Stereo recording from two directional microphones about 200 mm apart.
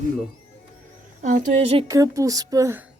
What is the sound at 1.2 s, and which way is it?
Speech, 40° right (ahead or behind).